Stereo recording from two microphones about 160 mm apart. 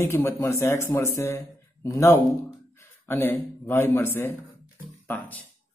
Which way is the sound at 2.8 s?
15° left (ahead or behind).